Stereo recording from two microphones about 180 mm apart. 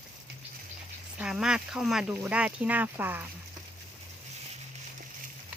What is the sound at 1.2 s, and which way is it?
Speech, 5° right (ahead or behind).